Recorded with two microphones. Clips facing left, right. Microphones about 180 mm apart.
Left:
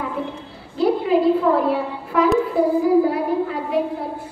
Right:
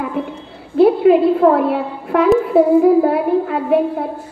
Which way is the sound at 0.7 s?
60° right (ahead or behind).